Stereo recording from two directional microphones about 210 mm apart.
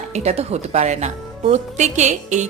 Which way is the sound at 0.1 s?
30° right (ahead or behind).